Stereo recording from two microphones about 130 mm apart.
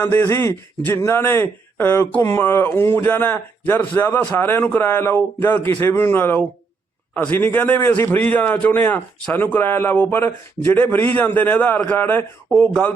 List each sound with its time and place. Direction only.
0.0 s speech: 20° left (ahead or behind)